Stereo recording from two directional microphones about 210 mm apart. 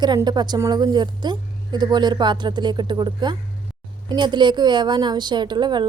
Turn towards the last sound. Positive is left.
turn(degrees=-20)  # may be behind; listen again after turning